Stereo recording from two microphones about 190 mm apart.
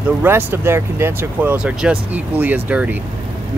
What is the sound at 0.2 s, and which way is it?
Speech, 10° right (ahead or behind).